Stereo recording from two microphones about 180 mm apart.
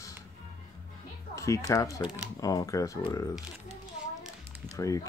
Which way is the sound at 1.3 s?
15° left (ahead or behind).